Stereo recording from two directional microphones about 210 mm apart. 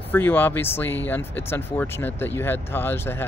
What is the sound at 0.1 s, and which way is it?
Speech, 10° left (ahead or behind).